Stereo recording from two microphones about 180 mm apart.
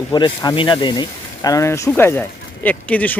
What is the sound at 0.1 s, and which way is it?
Speech, 25° left (ahead or behind).